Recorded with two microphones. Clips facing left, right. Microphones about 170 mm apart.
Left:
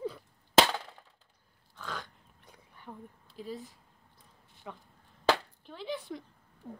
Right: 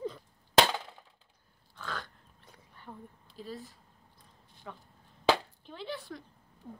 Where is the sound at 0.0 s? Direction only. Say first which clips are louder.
Left 1 dB; 5° left (ahead or behind).